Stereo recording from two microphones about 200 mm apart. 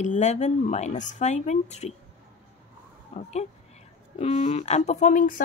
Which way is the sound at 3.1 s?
35° left (ahead or behind).